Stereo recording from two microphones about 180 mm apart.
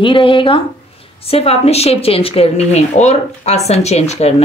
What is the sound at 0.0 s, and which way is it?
Speech, 30° left (ahead or behind).